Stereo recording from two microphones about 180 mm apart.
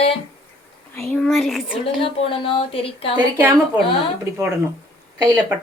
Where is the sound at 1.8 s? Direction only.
30° left (ahead or behind).